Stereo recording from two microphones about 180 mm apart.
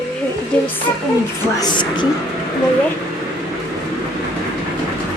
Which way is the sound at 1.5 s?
25° left (ahead or behind).